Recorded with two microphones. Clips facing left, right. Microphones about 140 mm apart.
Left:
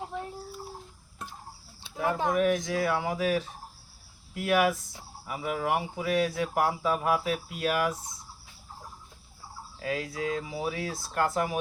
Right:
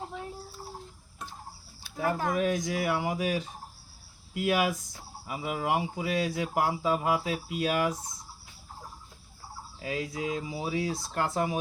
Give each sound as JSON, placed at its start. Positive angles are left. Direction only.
{"t": 1.8, "sound": "speech", "side_deg": 20}
{"t": 2.6, "sound": "speech", "side_deg": -15}
{"t": 9.8, "sound": "speech", "side_deg": -15}